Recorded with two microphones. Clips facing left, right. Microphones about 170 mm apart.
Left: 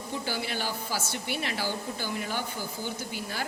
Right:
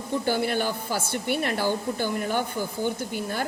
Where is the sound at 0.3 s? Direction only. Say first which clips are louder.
Right 9 dB; 55° right (ahead or behind).